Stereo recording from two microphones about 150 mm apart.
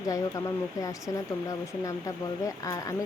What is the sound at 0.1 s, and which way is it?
Speech, 20° left (ahead or behind).